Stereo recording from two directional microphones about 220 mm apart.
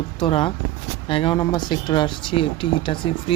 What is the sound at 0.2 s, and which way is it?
Speech, 25° left (ahead or behind).